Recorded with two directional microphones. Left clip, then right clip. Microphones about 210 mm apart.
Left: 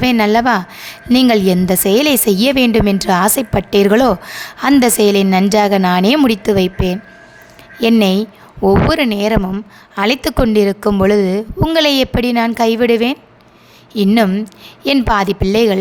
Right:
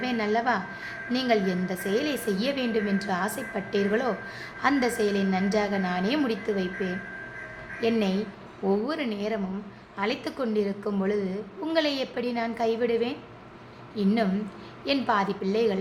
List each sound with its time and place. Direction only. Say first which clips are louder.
0.0 s a woman's voice: left 14 dB; 55° left (ahead or behind)